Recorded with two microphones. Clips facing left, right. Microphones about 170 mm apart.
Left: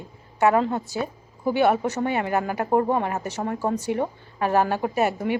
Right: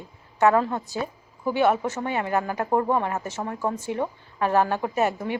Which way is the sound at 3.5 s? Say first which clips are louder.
Left 3 dB; 40° left (ahead or behind).